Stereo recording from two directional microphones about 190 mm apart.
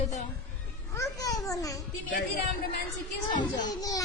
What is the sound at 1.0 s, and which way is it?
Speech, 15° left (ahead or behind).